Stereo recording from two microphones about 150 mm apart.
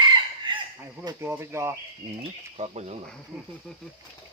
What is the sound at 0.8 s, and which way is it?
Speech, 20° right (ahead or behind).